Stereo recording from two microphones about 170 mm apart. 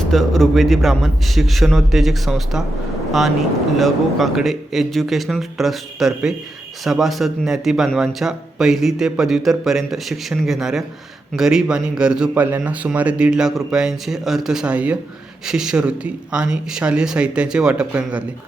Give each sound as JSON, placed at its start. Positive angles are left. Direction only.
{"t": 0.0, "sound": "a man's voice", "side_deg": 0}